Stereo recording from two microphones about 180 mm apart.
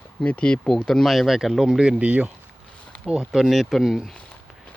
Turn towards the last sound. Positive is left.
turn(degrees=0)  # may be behind; listen again after turning